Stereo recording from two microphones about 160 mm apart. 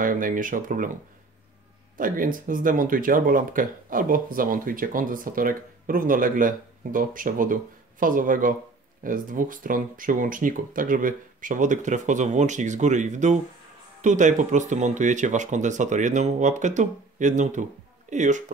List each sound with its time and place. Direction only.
0.0 s speech: 55° right (ahead or behind)
2.0 s speech: 60° right (ahead or behind)